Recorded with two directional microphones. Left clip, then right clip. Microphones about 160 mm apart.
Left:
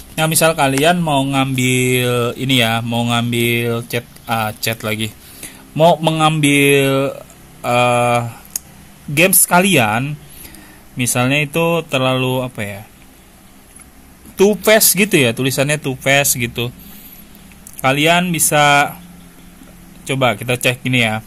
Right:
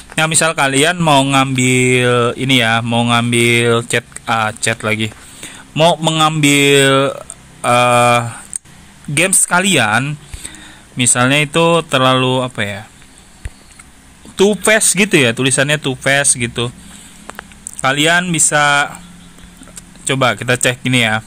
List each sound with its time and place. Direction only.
0.1 s speech: 5° right (ahead or behind)
1.0 s speech: 30° right (ahead or behind)
1.3 s speech: centre (ahead or behind)
9.5 s speech: 5° right (ahead or behind)
11.1 s speech: 5° right (ahead or behind)
14.3 s speech: 5° right (ahead or behind)
17.7 s speech: centre (ahead or behind)
20.1 s speech: 5° right (ahead or behind)